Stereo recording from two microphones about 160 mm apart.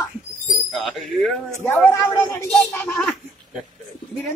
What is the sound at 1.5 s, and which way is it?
Speech, 15° left (ahead or behind).